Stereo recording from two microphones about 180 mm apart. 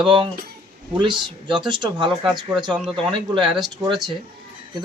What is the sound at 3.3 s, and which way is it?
Speech, 25° right (ahead or behind).